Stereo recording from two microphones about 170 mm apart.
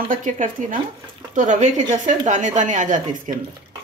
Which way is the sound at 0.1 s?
50° right (ahead or behind).